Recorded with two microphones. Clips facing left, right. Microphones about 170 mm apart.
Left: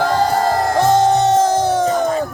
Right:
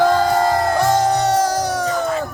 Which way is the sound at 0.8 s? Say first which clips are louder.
Left 6 dB; 25° left (ahead or behind).